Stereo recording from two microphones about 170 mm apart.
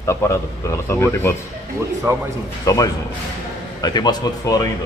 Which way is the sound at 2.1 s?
15° right (ahead or behind).